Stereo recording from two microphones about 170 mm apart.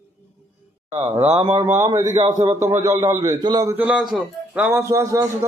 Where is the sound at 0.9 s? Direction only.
20° right (ahead or behind).